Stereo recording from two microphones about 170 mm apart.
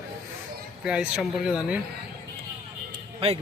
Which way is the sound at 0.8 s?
5° right (ahead or behind).